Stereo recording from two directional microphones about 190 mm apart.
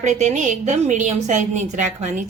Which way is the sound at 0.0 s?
40° right (ahead or behind).